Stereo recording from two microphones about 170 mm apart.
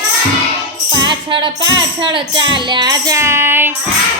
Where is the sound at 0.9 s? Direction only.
30° right (ahead or behind).